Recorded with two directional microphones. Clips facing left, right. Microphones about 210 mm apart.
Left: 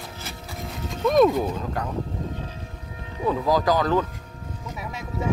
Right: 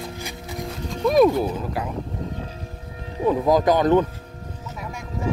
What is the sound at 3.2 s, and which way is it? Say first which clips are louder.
Speech: right 4 dB; 20° right (ahead or behind).